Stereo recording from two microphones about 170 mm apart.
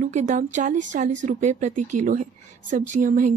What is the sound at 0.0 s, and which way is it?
A woman's voice, 45° right (ahead or behind).